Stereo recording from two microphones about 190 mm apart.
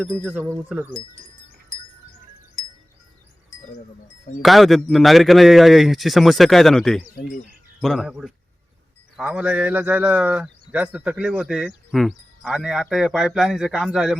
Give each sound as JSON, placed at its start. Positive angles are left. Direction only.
{"t": 0.0, "sound": "a man's voice", "side_deg": 5}
{"t": 0.3, "sound": "speech", "side_deg": -10}
{"t": 2.6, "sound": "wind chime", "side_deg": 25}
{"t": 4.4, "sound": "a man's voice", "side_deg": 0}